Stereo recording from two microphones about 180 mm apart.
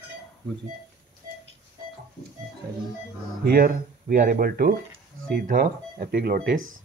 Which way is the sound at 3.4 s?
55° right (ahead or behind).